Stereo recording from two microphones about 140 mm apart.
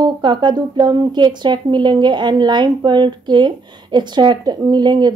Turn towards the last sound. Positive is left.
turn(degrees=-30)  # may be behind; listen again after turning